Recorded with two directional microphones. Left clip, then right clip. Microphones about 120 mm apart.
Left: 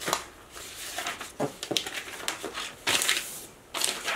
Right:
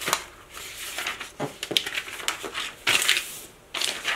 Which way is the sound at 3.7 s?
15° left (ahead or behind).